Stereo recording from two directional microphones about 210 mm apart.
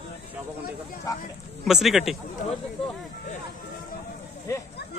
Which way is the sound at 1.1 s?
15° left (ahead or behind).